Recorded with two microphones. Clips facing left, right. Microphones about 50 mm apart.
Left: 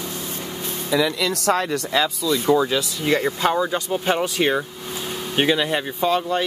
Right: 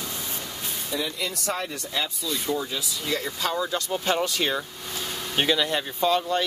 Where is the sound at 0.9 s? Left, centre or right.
Left.